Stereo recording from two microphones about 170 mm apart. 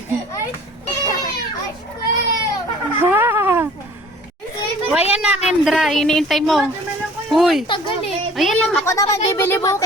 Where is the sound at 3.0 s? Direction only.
15° right (ahead or behind).